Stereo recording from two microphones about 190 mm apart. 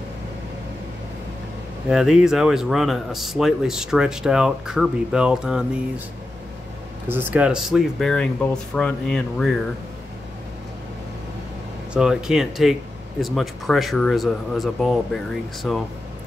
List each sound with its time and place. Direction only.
1.9 s speech: 5° right (ahead or behind)
7.1 s speech: 10° right (ahead or behind); by 9.5 s 5° left (ahead or behind)
11.9 s speech: 5° right (ahead or behind)